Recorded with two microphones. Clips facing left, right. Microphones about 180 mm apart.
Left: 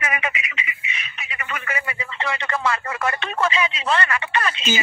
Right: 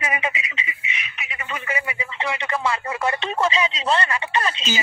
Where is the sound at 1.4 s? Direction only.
25° right (ahead or behind).